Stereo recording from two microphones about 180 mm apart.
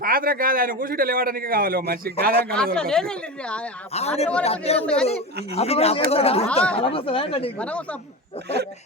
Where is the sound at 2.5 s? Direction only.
5° left (ahead or behind).